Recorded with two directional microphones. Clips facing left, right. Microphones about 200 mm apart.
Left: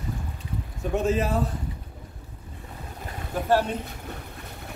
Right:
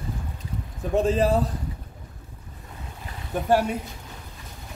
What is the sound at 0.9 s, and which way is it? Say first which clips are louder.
Speech: right 4 dB; 30° right (ahead or behind).